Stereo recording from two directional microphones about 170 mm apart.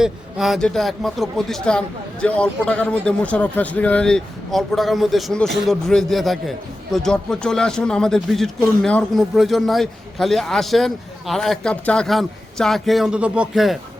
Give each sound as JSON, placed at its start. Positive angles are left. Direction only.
{"t": 0.0, "sound": "a man's voice", "side_deg": 0}